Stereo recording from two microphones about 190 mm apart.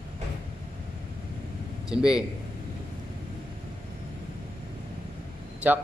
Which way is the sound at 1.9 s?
5° right (ahead or behind).